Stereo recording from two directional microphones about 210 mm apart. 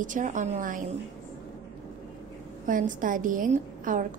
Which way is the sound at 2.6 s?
40° right (ahead or behind).